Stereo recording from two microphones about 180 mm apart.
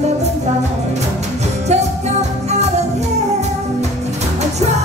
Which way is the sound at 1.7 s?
40° right (ahead or behind).